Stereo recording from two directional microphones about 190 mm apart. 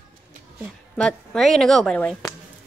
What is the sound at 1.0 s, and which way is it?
Speech, 5° left (ahead or behind).